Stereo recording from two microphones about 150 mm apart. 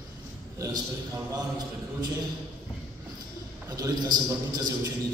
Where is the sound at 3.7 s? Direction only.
25° right (ahead or behind).